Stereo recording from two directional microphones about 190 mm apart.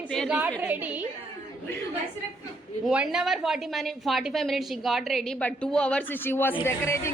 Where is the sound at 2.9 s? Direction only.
5° right (ahead or behind).